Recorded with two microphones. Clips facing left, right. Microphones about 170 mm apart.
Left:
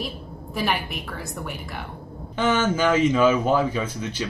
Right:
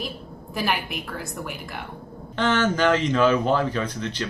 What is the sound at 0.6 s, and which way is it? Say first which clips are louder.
Speech: even; centre (ahead or behind).